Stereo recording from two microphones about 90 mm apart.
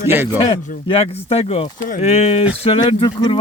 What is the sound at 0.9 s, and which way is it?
Speech, 90° left.